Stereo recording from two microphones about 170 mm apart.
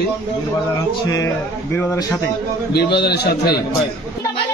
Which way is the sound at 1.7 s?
15° left (ahead or behind).